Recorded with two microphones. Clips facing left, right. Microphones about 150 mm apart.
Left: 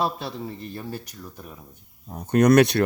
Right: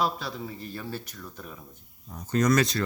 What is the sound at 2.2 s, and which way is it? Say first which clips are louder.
Speech: left 7 dB; 60° left (ahead or behind).